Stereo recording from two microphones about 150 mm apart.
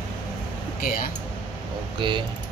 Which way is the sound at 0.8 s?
70° left (ahead or behind).